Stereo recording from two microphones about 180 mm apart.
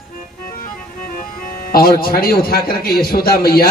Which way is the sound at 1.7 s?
55° left (ahead or behind).